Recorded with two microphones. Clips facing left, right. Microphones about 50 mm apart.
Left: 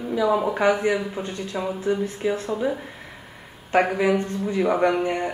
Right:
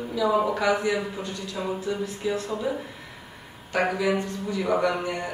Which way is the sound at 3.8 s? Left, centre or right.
Left.